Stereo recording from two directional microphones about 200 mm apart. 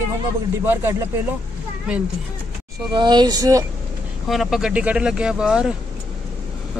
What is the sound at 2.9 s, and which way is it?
Speech, 20° right (ahead or behind).